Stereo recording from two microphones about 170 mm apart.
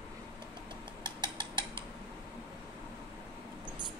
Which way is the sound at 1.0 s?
25° right (ahead or behind).